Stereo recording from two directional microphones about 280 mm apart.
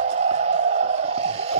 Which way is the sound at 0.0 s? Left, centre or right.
Right.